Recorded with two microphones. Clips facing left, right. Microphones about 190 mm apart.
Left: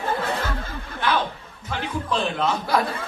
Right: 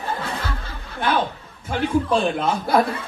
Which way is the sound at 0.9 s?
50° right (ahead or behind).